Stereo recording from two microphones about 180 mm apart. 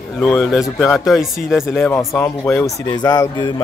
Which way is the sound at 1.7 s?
10° left (ahead or behind).